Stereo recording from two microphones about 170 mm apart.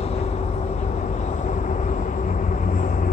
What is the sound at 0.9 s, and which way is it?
Vehicle, 45° left (ahead or behind).